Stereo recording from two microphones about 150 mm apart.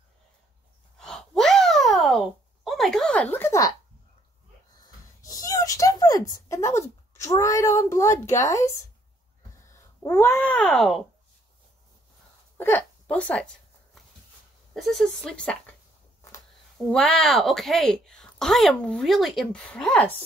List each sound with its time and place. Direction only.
0.9 s a sound: centre (ahead or behind); by 3.7 s 20° left (ahead or behind)
5.2 s a sound: 25° left (ahead or behind)
6.3 s speech: 20° left (ahead or behind)
10.0 s speech: 15° left (ahead or behind)
12.5 s speech: 15° left (ahead or behind)
14.7 s speech: centre (ahead or behind)
16.7 s speech: centre (ahead or behind)